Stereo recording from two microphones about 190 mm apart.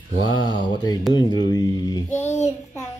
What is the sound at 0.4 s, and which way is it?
Speech, 25° left (ahead or behind).